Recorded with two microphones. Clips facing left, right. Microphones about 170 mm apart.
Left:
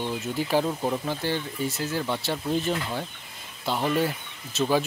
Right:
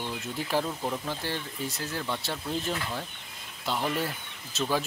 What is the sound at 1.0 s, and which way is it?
Speech, centre (ahead or behind).